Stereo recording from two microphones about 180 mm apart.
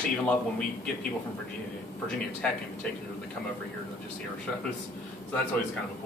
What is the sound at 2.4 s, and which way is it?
Speech, 5° left (ahead or behind).